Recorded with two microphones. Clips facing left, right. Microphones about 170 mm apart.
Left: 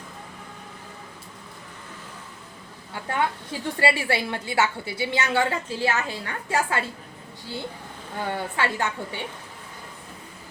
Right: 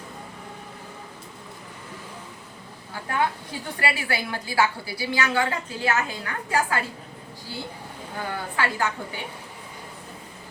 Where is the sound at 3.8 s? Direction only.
25° left (ahead or behind).